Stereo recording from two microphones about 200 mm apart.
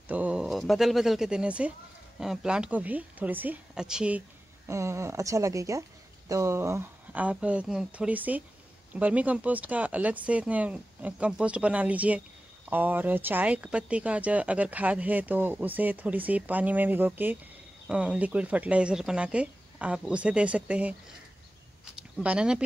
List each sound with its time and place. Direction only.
0.1 s speech: 5° right (ahead or behind)
4.6 s speech: 15° right (ahead or behind)
21.9 s speech: 5° right (ahead or behind)